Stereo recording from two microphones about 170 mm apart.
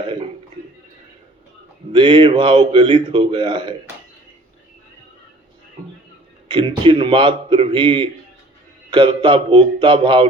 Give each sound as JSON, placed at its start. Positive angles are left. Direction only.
{"t": 0.0, "sound": "a sound", "side_deg": -30}
{"t": 1.9, "sound": "speech", "side_deg": -30}
{"t": 6.5, "sound": "speech", "side_deg": -30}